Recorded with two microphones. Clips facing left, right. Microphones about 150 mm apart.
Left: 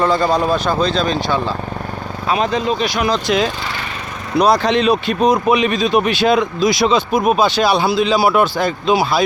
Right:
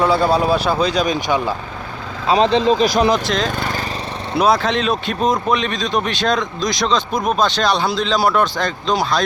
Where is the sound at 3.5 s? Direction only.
40° right (ahead or behind).